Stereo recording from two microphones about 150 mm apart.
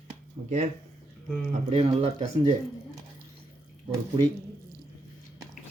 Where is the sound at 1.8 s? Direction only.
45° right (ahead or behind).